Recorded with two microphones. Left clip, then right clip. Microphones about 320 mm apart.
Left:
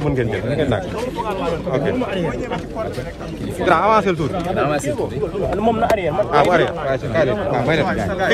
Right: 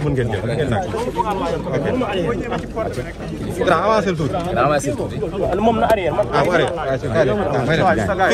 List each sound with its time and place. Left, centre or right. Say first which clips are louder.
3.6 s speech: left 2 dB; centre
4.6 s speech: right 3 dB; centre
6.3 s speech: left 4 dB; centre